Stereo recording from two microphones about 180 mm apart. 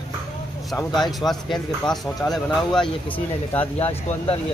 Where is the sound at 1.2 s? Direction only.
Centre (ahead or behind).